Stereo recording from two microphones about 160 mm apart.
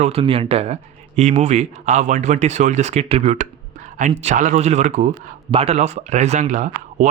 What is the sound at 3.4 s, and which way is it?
Speech, 50° right (ahead or behind).